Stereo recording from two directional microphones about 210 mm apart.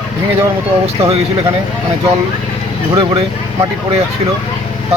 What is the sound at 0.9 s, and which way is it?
Speech, 30° right (ahead or behind).